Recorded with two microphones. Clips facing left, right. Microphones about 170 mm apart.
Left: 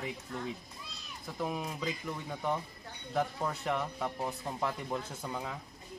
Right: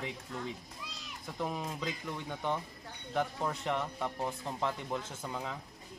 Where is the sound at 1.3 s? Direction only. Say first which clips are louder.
Left 1 dB; 5° left (ahead or behind).